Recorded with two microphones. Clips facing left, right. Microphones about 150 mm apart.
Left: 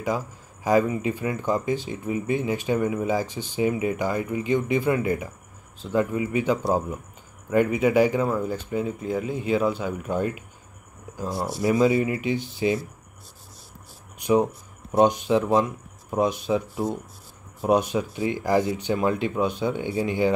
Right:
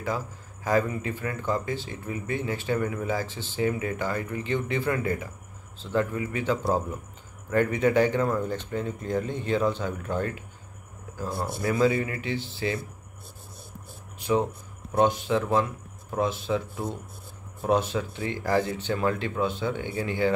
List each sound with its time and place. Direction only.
0.7 s speech: 15° left (ahead or behind)
11.6 s speech: 20° left (ahead or behind)
14.1 s speech: 15° left (ahead or behind)